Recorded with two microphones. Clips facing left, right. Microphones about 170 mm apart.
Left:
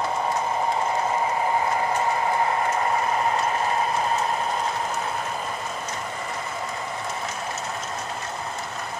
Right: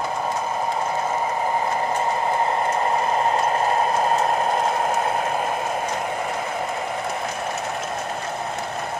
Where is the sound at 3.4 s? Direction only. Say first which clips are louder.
Right 4 dB; 50° right (ahead or behind); by 6.1 s 65° right (ahead or behind).